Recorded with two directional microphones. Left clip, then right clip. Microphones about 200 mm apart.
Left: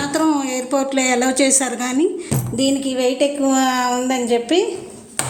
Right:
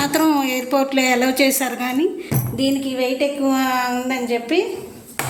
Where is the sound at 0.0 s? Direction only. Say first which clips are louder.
Right 1 dB; 5° right (ahead or behind).